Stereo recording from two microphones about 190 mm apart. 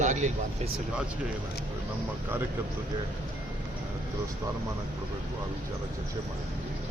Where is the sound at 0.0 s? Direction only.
40° right (ahead or behind).